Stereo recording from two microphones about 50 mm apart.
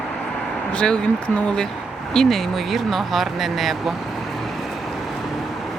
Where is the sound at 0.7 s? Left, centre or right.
Centre.